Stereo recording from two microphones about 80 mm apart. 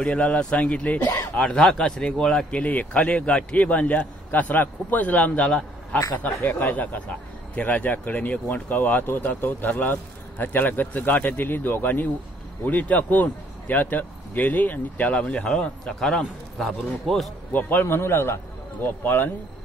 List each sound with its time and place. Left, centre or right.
0.0 s speech: centre
17.5 s speech: left